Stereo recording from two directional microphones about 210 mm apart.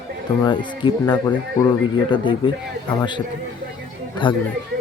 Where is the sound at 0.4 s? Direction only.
20° left (ahead or behind).